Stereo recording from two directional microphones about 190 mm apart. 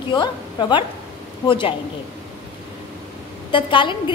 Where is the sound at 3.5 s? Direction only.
25° left (ahead or behind).